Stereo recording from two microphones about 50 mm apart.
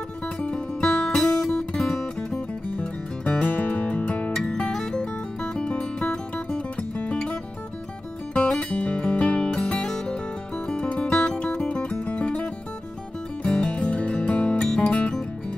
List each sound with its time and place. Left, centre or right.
0.4 s music: centre
2.8 s music: left
3.4 s music: left
4.4 s music: centre
8.5 s music: left